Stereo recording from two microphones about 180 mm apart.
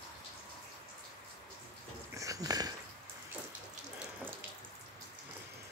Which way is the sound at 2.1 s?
20° right (ahead or behind).